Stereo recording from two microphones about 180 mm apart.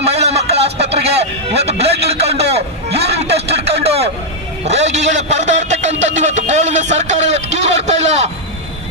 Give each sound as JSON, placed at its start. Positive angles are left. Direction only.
{"t": 0.0, "sound": "music", "side_deg": -35}
{"t": 4.6, "sound": "a man's voice", "side_deg": -35}